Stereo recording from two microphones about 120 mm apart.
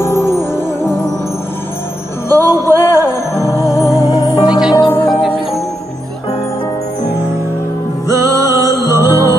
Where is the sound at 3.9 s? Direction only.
30° right (ahead or behind).